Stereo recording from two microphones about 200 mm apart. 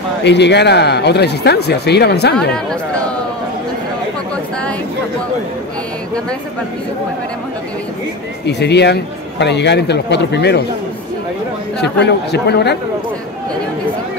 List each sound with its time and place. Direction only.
0.2 s speech: 60° left (ahead or behind)
2.5 s speech: 5° left (ahead or behind)
8.5 s speech: 55° left (ahead or behind)
11.8 s speech: 55° left (ahead or behind)